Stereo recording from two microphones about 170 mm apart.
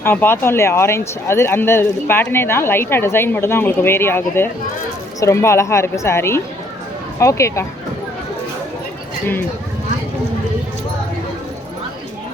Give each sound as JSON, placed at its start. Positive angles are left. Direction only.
{"t": 0.0, "sound": "speech", "side_deg": 10}